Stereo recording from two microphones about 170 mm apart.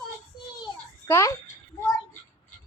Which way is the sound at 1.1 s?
15° left (ahead or behind).